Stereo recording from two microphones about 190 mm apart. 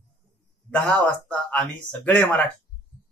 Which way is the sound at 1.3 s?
5° left (ahead or behind).